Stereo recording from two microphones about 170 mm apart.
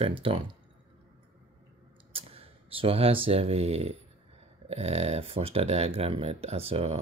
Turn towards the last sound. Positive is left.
turn(degrees=-35)  # may be behind; listen again after turning